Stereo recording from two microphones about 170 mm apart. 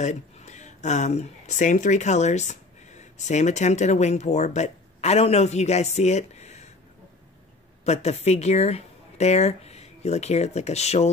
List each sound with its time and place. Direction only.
0.0 s speech: 45° left (ahead or behind)
7.8 s speech: 40° left (ahead or behind)